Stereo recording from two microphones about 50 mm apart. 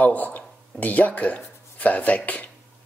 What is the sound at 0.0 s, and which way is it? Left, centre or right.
Speech, left.